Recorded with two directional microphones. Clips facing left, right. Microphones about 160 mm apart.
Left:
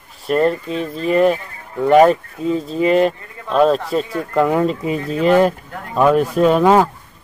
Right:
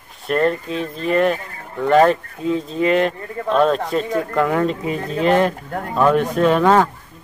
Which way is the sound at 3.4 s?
45° right (ahead or behind).